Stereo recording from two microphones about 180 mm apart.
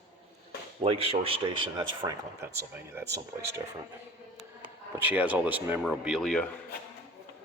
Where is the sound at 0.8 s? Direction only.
30° right (ahead or behind).